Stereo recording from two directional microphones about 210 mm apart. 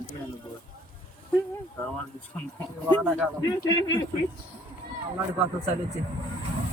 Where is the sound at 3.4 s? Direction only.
20° left (ahead or behind).